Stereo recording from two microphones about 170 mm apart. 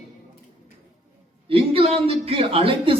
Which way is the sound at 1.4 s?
35° right (ahead or behind).